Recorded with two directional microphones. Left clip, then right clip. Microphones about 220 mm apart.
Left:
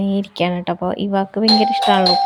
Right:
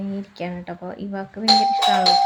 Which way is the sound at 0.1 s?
35° left (ahead or behind).